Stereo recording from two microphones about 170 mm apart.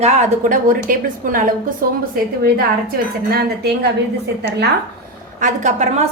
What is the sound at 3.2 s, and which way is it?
Speech, 70° right (ahead or behind).